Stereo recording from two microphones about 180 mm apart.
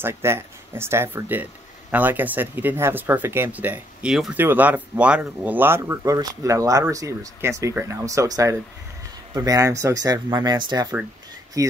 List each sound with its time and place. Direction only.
0.0 s speech: 15° right (ahead or behind)